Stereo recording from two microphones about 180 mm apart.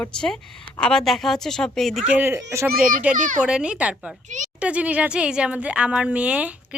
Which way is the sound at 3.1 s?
50° right (ahead or behind).